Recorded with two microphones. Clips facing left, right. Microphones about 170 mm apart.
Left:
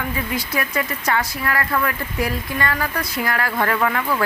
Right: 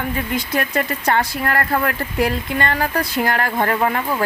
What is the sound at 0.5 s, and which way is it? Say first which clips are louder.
Speech: right 4 dB; 60° right (ahead or behind).